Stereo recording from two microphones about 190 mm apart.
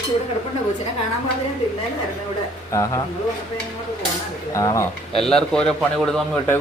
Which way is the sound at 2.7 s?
15° left (ahead or behind).